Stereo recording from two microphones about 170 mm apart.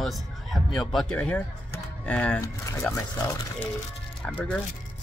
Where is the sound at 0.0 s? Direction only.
Centre (ahead or behind); by 3.6 s 20° left (ahead or behind).